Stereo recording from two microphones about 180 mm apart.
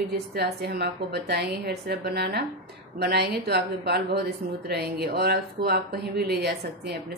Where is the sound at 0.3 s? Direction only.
60° right (ahead or behind).